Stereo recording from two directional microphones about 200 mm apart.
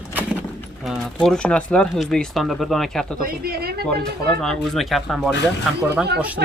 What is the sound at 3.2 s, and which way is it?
Speech, 50° right (ahead or behind).